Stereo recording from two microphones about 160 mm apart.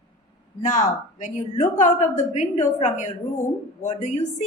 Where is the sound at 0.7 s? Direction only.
50° left (ahead or behind).